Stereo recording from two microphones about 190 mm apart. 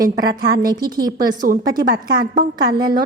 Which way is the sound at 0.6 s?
20° right (ahead or behind).